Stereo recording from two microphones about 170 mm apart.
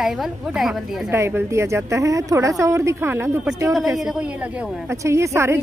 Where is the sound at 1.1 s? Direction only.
15° right (ahead or behind).